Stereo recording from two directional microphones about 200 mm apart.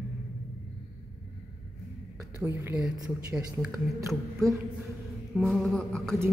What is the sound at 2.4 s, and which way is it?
A woman's voice, 10° right (ahead or behind).